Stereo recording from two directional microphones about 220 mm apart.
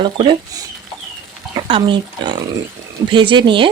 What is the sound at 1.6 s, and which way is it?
Speech, 20° right (ahead or behind).